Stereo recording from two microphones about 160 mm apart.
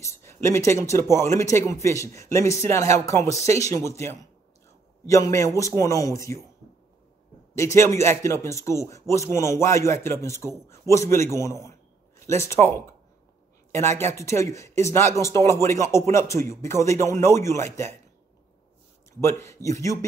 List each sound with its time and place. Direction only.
0.0 s speech: 15° left (ahead or behind)
7.5 s speech: 15° left (ahead or behind)
19.2 s speech: 15° left (ahead or behind)